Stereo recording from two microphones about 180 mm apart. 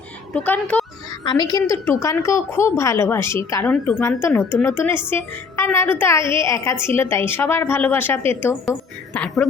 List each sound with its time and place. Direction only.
0.3 s a woman's voice: 10° left (ahead or behind)
1.2 s a woman's voice: 25° left (ahead or behind); by 9.5 s 5° left (ahead or behind)